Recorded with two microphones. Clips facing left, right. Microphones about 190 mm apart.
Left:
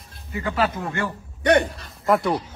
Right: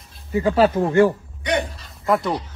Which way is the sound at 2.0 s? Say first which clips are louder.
Even; centre (ahead or behind).